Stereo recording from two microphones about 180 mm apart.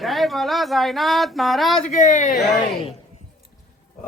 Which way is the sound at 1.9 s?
40° left (ahead or behind).